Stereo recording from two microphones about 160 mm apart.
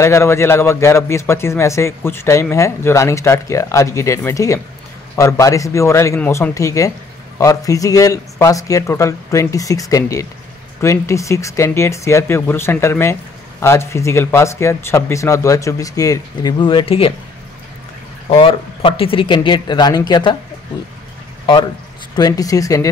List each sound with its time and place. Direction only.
0.0 s speech: 15° left (ahead or behind); by 17.1 s 35° left (ahead or behind)
18.3 s speech: 35° left (ahead or behind)
22.1 s speech: 25° left (ahead or behind)